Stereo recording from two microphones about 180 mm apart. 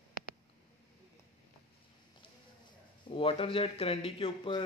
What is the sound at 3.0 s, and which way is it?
Speech, 30° left (ahead or behind).